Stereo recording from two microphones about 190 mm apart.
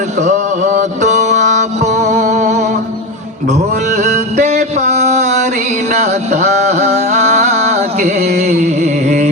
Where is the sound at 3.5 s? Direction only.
40° right (ahead or behind).